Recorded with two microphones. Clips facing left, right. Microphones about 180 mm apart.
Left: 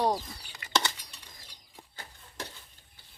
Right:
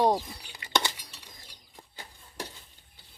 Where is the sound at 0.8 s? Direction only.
10° right (ahead or behind).